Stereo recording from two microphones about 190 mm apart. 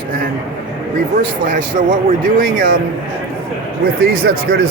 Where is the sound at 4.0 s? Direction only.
55° right (ahead or behind).